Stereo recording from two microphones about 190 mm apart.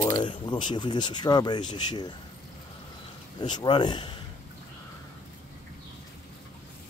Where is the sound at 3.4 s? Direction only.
25° left (ahead or behind).